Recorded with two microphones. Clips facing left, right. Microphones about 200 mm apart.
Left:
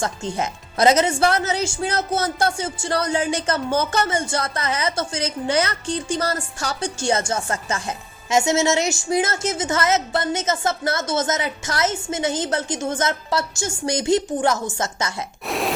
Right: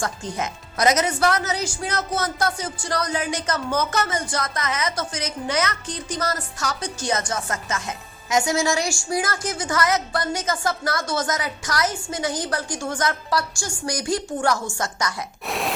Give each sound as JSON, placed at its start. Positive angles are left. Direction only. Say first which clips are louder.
{"t": 0.0, "sound": "speech", "louder": "left 3 dB", "side_deg": 30}
{"t": 15.4, "sound": "grunt", "louder": "left 3 dB", "side_deg": 0}